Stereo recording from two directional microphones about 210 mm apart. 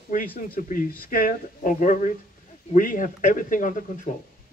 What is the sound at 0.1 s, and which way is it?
Speech, 40° left (ahead or behind).